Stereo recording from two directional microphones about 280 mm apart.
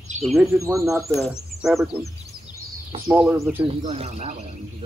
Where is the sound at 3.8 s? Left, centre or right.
Right.